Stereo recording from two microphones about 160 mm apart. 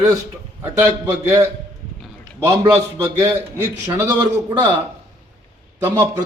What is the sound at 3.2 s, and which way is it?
A man's voice, 20° right (ahead or behind).